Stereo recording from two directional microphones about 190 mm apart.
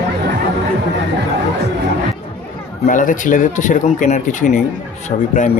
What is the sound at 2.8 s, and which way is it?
Speech, 45° left (ahead or behind).